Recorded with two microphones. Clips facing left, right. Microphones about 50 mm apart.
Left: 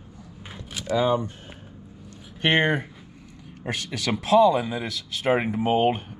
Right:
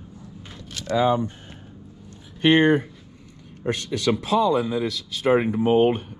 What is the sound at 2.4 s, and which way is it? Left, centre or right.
Speech, left.